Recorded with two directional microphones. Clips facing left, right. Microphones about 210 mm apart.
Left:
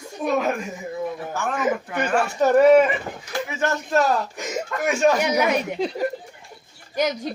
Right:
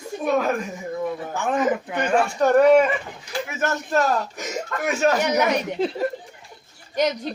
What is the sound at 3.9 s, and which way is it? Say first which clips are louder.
Speech: left 1 dB; centre (ahead or behind).